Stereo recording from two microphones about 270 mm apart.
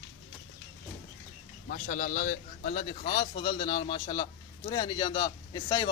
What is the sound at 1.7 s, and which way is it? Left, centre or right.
Speech, left.